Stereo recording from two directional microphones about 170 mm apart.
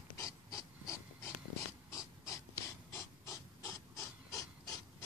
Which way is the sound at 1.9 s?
20° left (ahead or behind).